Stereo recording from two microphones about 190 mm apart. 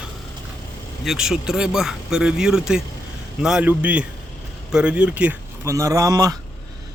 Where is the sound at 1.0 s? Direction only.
5° right (ahead or behind).